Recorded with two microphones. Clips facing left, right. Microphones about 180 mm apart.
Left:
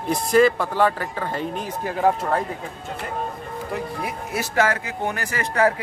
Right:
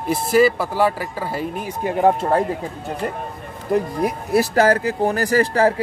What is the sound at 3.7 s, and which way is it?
A man's voice, 40° right (ahead or behind).